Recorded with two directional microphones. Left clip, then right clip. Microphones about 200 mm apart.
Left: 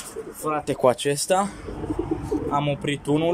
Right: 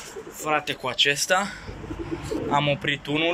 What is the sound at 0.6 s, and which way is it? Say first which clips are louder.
Speech: left 3 dB; 45° left (ahead or behind).